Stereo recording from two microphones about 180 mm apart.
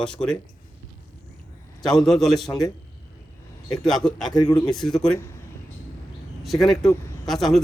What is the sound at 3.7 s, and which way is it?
Speech, centre (ahead or behind).